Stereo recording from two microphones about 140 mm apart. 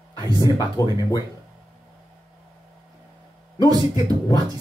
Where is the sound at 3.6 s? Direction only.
25° right (ahead or behind).